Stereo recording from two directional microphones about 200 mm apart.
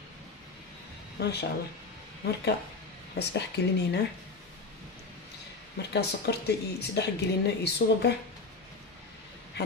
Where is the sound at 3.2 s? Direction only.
55° left (ahead or behind).